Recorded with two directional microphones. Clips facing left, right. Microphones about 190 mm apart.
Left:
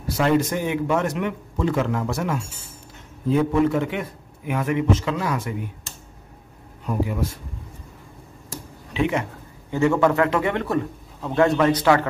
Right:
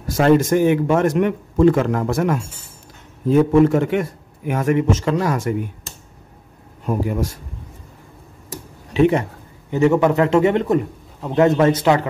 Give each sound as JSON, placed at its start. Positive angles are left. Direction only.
{"t": 0.0, "sound": "a man's voice", "side_deg": -50}
{"t": 6.9, "sound": "a man's voice", "side_deg": -45}
{"t": 8.9, "sound": "speech", "side_deg": -40}
{"t": 9.7, "sound": "a man's voice", "side_deg": -20}